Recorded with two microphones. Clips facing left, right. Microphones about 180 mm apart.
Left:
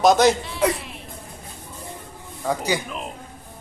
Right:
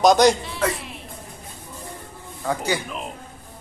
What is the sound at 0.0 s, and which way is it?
Speech, 5° left (ahead or behind).